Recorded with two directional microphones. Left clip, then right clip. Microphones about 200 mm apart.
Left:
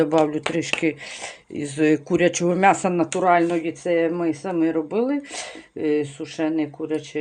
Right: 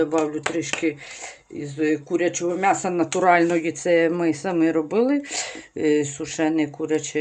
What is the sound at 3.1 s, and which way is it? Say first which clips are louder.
Speech: right 2 dB; 5° right (ahead or behind).